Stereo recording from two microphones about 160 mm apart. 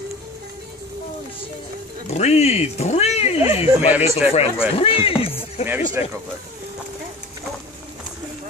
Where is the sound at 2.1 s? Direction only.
45° left (ahead or behind).